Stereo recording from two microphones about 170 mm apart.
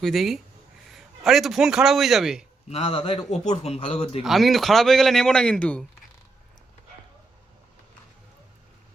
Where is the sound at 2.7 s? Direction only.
35° left (ahead or behind).